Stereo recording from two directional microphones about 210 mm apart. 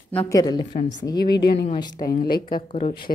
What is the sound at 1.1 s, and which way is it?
Speech, 50° left (ahead or behind).